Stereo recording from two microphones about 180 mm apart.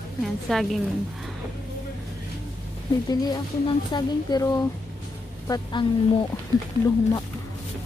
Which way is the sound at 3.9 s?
20° left (ahead or behind).